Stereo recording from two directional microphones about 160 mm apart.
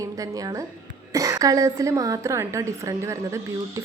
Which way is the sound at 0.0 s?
20° right (ahead or behind).